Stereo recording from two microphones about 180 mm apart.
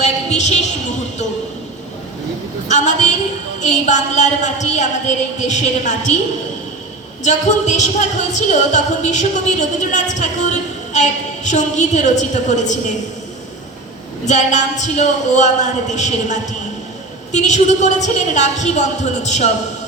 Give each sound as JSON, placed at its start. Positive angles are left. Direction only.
{"t": 0.0, "sound": "a sound", "side_deg": 40}
{"t": 2.6, "sound": "music", "side_deg": 40}
{"t": 7.3, "sound": "music", "side_deg": 40}
{"t": 14.3, "sound": "music", "side_deg": 40}